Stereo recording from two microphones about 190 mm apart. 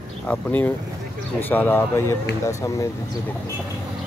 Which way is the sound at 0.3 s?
10° left (ahead or behind).